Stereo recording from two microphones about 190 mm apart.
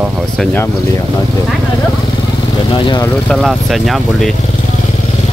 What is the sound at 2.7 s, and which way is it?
Speech, 25° left (ahead or behind).